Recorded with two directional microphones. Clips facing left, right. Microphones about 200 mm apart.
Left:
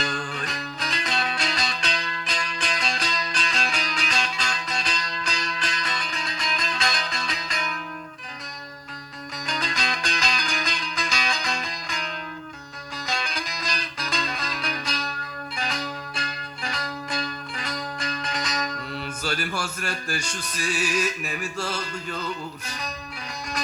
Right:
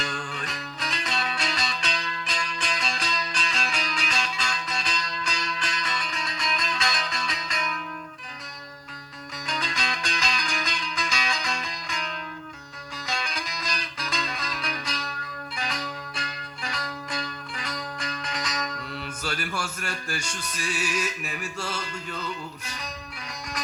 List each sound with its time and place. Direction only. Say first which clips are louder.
0.0 s music: left 3 dB; 35° left (ahead or behind)
9.5 s music: left 2 dB; 35° left (ahead or behind)
15.5 s zither: left 2 dB; 30° left (ahead or behind)
19.2 s music: left 2 dB; 30° left (ahead or behind)